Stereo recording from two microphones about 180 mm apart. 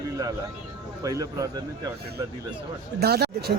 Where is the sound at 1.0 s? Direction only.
20° right (ahead or behind).